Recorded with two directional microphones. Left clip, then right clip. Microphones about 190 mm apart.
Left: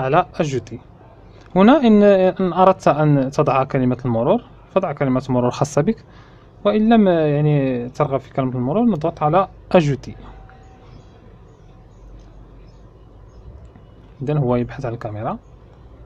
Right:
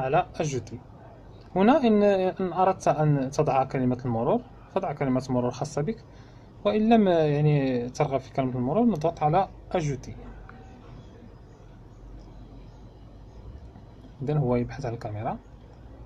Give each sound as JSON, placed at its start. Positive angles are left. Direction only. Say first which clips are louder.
{"t": 0.0, "sound": "a man's voice", "louder": "left 8 dB", "side_deg": 30}
{"t": 6.6, "sound": "a man's voice", "louder": "left 6 dB", "side_deg": 20}
{"t": 14.2, "sound": "a man's voice", "louder": "left 7 dB", "side_deg": 20}